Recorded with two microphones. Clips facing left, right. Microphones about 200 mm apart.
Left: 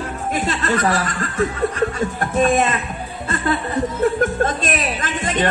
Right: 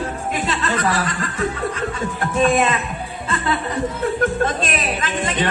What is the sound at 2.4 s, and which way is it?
Speech, 45° left (ahead or behind).